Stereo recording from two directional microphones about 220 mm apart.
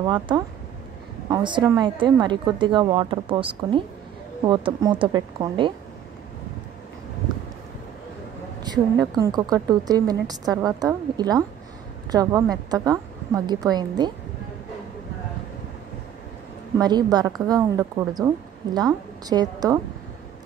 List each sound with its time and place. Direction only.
0.0 s a woman's voice: 20° right (ahead or behind)
8.6 s a woman's voice: 15° right (ahead or behind)
16.7 s a woman's voice: 20° right (ahead or behind)